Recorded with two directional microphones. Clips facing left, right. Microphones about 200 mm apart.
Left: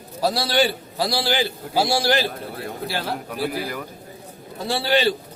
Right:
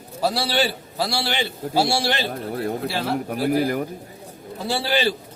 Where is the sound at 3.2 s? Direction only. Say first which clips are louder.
Right 6 dB; 45° right (ahead or behind).